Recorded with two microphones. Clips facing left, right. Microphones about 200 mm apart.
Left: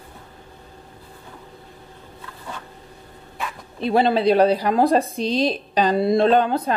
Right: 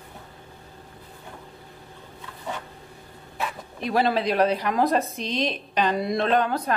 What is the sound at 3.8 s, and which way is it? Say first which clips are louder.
Speech: left 5 dB; 30° left (ahead or behind).